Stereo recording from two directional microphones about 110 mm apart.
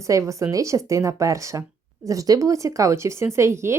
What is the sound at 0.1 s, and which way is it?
Speech, 30° right (ahead or behind).